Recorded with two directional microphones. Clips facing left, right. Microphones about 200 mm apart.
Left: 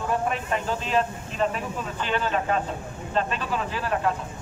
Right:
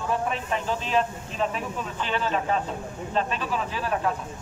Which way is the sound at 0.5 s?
Centre (ahead or behind).